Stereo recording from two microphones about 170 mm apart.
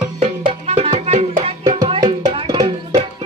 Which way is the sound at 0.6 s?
35° right (ahead or behind).